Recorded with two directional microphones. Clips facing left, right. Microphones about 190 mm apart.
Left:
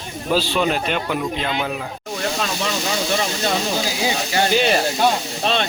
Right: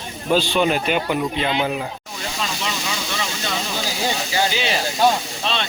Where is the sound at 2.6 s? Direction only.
50° left (ahead or behind).